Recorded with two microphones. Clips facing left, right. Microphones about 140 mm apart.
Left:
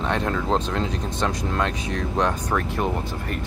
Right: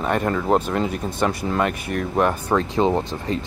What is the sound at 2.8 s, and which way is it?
Speech, 25° right (ahead or behind).